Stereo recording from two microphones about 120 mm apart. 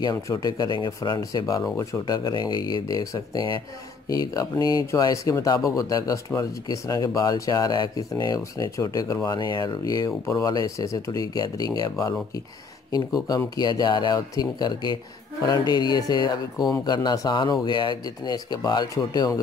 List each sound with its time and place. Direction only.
0.0 s speech: 35° left (ahead or behind)